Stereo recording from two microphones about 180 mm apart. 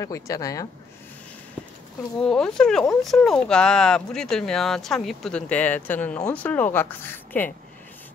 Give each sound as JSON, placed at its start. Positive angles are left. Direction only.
{"t": 0.0, "sound": "speech", "side_deg": 20}
{"t": 2.1, "sound": "speech", "side_deg": 5}